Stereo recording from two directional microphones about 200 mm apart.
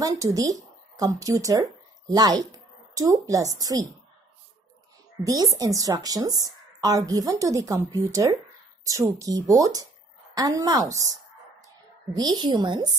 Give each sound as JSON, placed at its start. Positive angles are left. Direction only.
{"t": 0.0, "sound": "a woman's voice", "side_deg": -15}
{"t": 5.2, "sound": "a woman's voice", "side_deg": -15}